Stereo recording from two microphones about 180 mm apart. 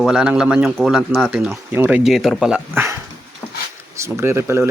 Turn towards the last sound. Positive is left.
turn(degrees=-15)  # may be behind; listen again after turning